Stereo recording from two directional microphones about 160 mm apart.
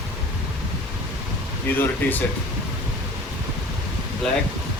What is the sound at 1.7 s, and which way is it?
Speech, 15° left (ahead or behind).